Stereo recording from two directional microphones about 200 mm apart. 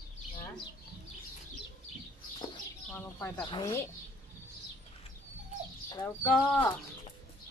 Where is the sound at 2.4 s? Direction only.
20° left (ahead or behind).